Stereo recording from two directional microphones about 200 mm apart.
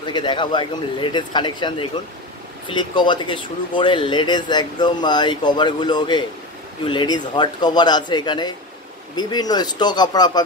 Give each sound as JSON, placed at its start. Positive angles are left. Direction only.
{"t": 0.0, "sound": "speech", "side_deg": 20}